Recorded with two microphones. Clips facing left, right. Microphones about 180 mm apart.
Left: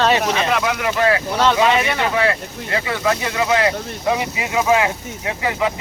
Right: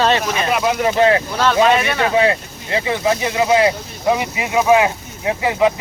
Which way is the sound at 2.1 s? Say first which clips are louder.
Right 3 dB; 20° right (ahead or behind).